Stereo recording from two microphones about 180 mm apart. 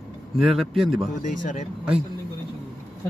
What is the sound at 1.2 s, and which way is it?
Speech, 45° left (ahead or behind).